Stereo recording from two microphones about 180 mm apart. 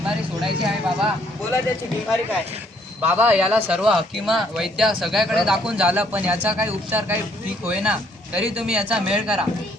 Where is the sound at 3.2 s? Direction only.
10° right (ahead or behind).